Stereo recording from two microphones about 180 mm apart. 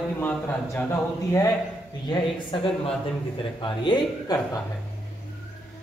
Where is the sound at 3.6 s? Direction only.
25° left (ahead or behind).